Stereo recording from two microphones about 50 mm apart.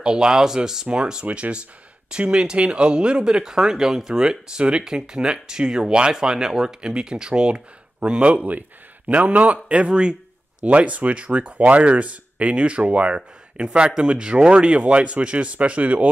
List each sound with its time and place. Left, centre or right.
0.0 s speech: centre